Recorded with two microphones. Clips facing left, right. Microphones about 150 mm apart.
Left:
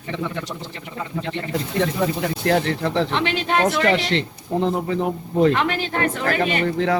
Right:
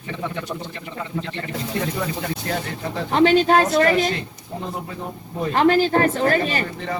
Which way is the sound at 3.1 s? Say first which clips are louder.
Right 7 dB; 40° right (ahead or behind).